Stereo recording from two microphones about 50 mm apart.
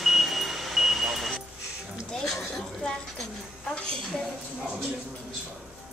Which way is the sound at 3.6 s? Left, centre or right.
Centre.